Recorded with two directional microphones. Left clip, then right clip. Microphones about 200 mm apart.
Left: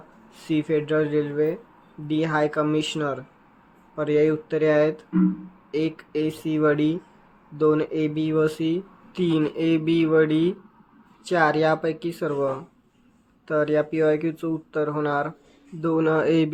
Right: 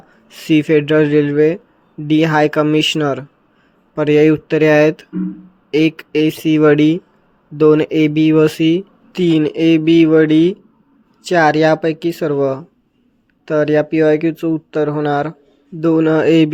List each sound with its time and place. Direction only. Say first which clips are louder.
0.3 s speech: right 11 dB; 45° right (ahead or behind)